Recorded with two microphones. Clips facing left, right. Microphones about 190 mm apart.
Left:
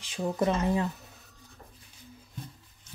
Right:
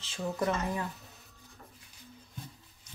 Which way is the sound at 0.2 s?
20° left (ahead or behind).